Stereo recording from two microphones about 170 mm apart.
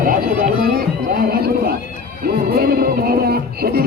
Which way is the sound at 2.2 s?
65° right (ahead or behind).